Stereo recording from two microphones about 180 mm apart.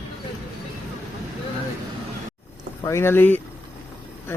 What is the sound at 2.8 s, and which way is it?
Speech, 15° left (ahead or behind).